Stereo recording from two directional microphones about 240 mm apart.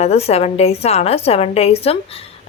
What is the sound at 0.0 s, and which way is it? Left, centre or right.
A woman's voice, left.